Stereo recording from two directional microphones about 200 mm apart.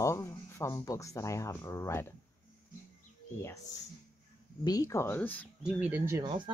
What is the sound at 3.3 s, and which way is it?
Speech, 15° left (ahead or behind).